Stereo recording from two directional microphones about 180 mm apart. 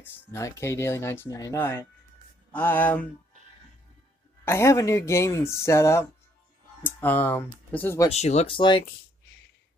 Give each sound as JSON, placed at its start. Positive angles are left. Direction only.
{"t": 0.0, "sound": "speech", "side_deg": 15}
{"t": 4.5, "sound": "speech", "side_deg": 15}
{"t": 8.1, "sound": "speech", "side_deg": 35}